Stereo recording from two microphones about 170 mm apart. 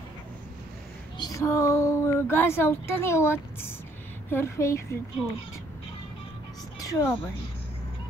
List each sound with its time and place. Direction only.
1.1 s a woman's voice: 20° left (ahead or behind)
6.8 s speech: 15° left (ahead or behind)